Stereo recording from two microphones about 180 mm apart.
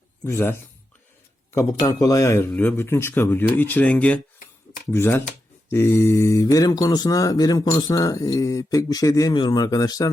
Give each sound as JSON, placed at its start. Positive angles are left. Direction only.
{"t": 0.3, "sound": "speech", "side_deg": 15}
{"t": 1.5, "sound": "speech", "side_deg": 15}